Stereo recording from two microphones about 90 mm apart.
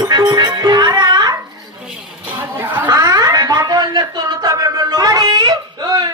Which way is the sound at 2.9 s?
45° right (ahead or behind).